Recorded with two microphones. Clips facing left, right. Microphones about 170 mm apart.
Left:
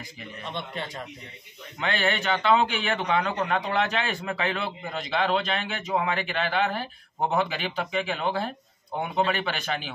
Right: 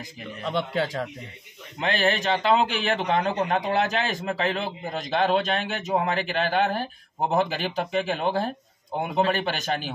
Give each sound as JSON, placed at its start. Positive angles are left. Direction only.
{"t": 0.4, "sound": "a man's voice", "side_deg": -90}
{"t": 1.8, "sound": "a man's voice", "side_deg": -40}